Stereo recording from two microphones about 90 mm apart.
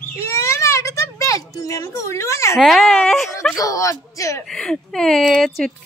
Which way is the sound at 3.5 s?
40° left (ahead or behind).